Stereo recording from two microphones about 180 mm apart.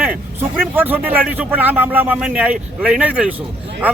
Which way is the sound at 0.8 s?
10° right (ahead or behind).